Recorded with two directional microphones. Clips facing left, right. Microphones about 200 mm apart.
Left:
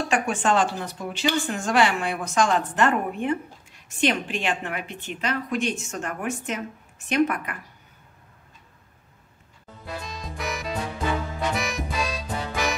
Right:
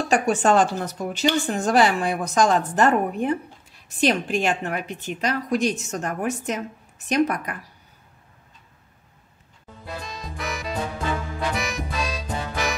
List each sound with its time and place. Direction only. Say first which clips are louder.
0.1 s a woman's voice: right 5 dB; 40° right (ahead or behind)
9.8 s music: even; centre (ahead or behind)